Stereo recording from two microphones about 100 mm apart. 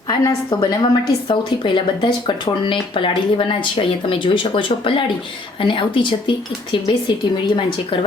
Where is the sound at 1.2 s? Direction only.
55° left (ahead or behind).